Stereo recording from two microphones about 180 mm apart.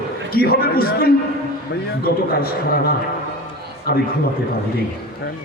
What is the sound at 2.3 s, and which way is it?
A man's voice, 55° left (ahead or behind).